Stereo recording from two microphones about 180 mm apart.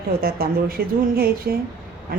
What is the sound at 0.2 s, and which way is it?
A woman's voice, 55° right (ahead or behind).